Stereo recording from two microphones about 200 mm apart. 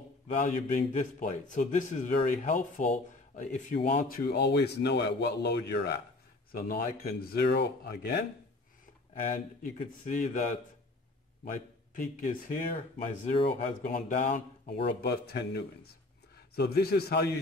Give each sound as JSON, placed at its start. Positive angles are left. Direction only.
{"t": 0.4, "sound": "a man's voice", "side_deg": 40}
{"t": 4.1, "sound": "speech", "side_deg": 50}
{"t": 9.3, "sound": "a man's voice", "side_deg": 40}
{"t": 11.9, "sound": "a man's voice", "side_deg": 40}
{"t": 15.0, "sound": "speech", "side_deg": 55}